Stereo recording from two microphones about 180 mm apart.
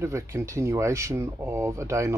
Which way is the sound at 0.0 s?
15° right (ahead or behind).